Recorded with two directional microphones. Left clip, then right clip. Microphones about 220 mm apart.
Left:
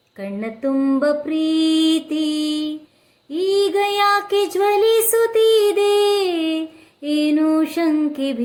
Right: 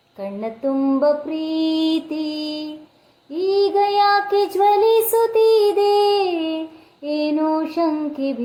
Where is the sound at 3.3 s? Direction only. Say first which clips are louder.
Left 1 dB; 25° left (ahead or behind).